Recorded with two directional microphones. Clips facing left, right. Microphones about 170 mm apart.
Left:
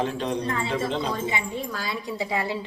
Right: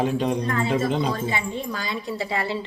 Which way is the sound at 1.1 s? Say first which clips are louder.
Right 2 dB; 15° left (ahead or behind).